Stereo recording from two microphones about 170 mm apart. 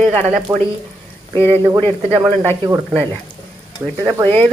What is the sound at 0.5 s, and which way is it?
Speech, 20° right (ahead or behind).